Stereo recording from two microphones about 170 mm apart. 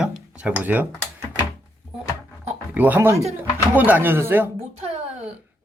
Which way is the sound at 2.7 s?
10° right (ahead or behind).